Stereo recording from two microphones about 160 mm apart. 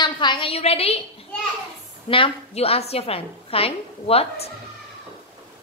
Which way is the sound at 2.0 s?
35° left (ahead or behind).